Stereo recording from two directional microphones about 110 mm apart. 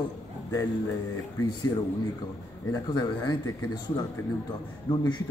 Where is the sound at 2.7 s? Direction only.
40° left (ahead or behind).